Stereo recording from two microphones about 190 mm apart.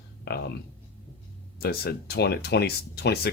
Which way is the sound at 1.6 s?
55° left (ahead or behind).